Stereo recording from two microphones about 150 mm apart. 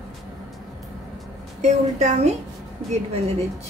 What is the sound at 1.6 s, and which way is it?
Speech, 50° right (ahead or behind).